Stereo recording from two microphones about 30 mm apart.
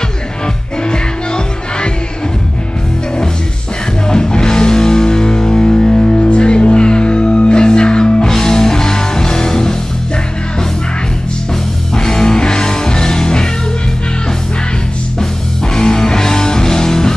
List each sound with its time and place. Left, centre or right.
0.8 s music: left
4.1 s music: left
6.1 s music: left
8.2 s music: centre
11.9 s music: left
15.1 s music: left